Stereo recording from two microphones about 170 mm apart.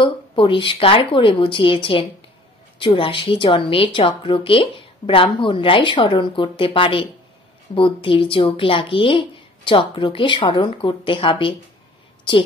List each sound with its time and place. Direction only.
0.0 s a woman's voice: 30° left (ahead or behind)